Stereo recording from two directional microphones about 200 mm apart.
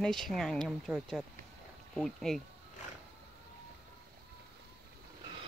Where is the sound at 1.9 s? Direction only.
Centre (ahead or behind).